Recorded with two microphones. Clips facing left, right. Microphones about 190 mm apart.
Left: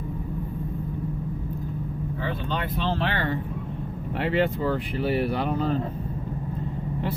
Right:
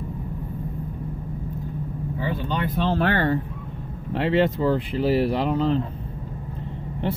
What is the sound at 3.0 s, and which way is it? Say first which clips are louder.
Speech: right 5 dB; 45° right (ahead or behind).